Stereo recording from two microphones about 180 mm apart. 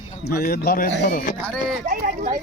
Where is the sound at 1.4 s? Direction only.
5° left (ahead or behind).